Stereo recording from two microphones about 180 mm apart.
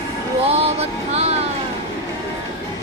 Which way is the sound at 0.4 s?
35° right (ahead or behind).